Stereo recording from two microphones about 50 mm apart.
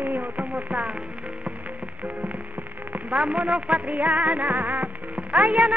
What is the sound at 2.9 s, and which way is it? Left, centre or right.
Music, right.